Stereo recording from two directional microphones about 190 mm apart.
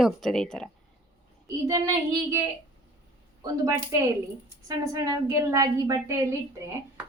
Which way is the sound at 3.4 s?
20° right (ahead or behind).